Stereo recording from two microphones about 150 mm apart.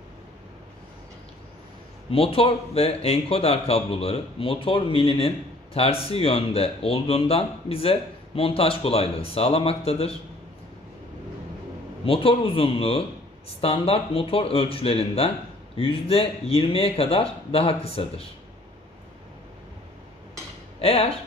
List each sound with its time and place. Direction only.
2.0 s speech: 40° left (ahead or behind)
12.0 s speech: 40° left (ahead or behind)
20.8 s speech: 40° left (ahead or behind)